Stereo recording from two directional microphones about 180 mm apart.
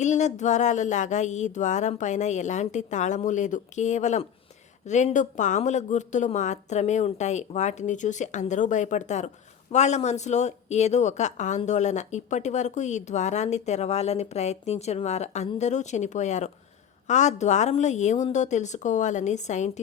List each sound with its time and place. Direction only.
0.0 s a woman's voice: 40° left (ahead or behind)